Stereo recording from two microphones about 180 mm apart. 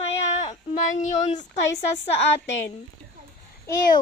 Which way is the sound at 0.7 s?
40° left (ahead or behind).